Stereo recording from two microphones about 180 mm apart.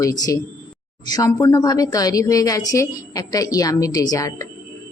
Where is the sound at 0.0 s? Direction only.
20° left (ahead or behind).